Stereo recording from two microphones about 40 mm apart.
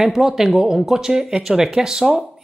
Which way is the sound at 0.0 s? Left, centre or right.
Centre.